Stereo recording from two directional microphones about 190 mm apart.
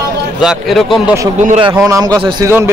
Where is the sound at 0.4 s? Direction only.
Centre (ahead or behind).